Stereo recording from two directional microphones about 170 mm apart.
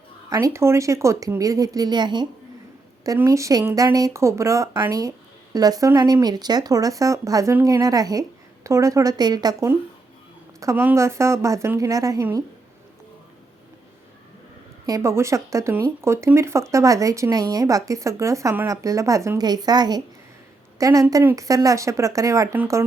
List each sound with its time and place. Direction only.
0.3 s speech: 20° right (ahead or behind)
14.8 s speech: 20° right (ahead or behind)